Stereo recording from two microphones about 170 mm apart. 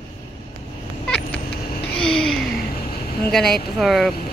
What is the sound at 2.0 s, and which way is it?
Speech, 5° left (ahead or behind).